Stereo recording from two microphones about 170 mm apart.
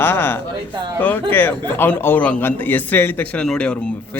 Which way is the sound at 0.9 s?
10° left (ahead or behind).